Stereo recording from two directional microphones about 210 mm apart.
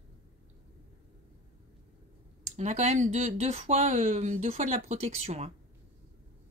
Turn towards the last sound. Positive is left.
turn(degrees=-30)  # may be behind; listen again after turning